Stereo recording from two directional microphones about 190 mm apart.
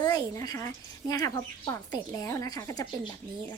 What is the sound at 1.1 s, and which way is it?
A child's voice, 20° left (ahead or behind).